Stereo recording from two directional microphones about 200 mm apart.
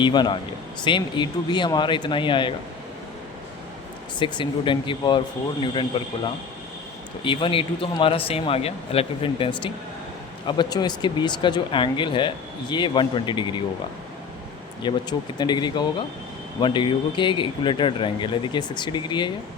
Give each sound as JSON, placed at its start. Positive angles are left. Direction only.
{"t": 0.0, "sound": "speech", "side_deg": 20}
{"t": 4.2, "sound": "speech", "side_deg": 25}
{"t": 7.3, "sound": "speech", "side_deg": 25}
{"t": 14.8, "sound": "speech", "side_deg": 25}